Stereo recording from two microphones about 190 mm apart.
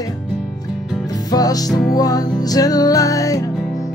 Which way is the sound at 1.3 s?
20° left (ahead or behind).